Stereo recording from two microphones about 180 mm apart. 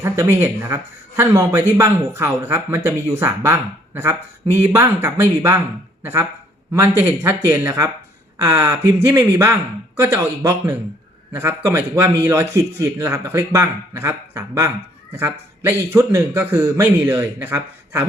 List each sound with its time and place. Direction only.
0.0 s a man's voice: 15° right (ahead or behind)